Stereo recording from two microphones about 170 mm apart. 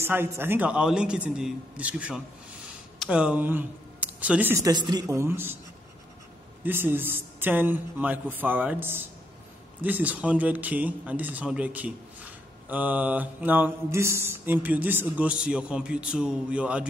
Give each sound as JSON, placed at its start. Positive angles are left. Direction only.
{"t": 0.0, "sound": "a man's voice", "side_deg": -15}
{"t": 4.7, "sound": "speech", "side_deg": -25}
{"t": 6.6, "sound": "speech", "side_deg": -10}